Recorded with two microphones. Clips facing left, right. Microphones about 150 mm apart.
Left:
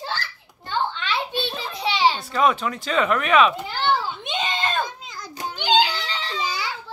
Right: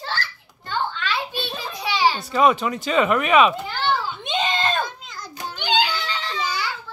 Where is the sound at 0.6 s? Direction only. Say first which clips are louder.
Even; 25° left (ahead or behind).